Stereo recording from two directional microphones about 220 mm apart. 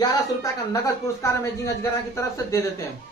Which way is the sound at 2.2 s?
15° left (ahead or behind).